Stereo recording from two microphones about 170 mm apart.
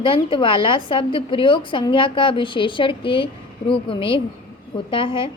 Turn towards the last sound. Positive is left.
turn(degrees=30)  # may be behind; listen again after turning